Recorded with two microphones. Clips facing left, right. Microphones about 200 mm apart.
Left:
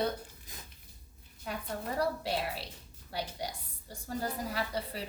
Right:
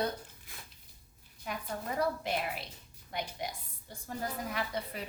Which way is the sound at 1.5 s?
35° left (ahead or behind).